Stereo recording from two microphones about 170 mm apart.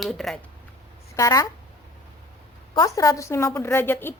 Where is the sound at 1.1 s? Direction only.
20° left (ahead or behind).